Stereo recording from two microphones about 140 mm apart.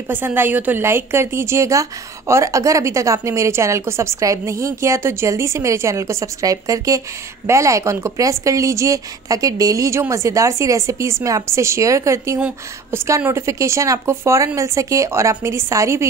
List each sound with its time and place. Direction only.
0.1 s a woman's voice: 15° right (ahead or behind)
12.4 s speech: 10° right (ahead or behind)
13.0 s a woman's voice: 20° right (ahead or behind)